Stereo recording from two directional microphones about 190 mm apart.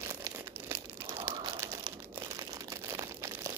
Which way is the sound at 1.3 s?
25° right (ahead or behind).